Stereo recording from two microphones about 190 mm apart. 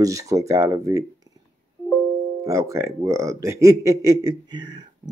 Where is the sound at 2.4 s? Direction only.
15° right (ahead or behind).